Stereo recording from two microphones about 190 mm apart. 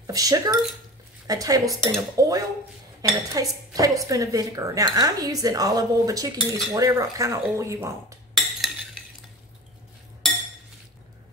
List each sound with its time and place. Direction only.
0.0 s speech: 20° right (ahead or behind)
8.4 s cutlery: centre (ahead or behind)